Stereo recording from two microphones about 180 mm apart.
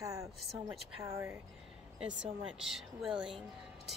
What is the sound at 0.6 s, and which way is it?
Speech, 15° right (ahead or behind).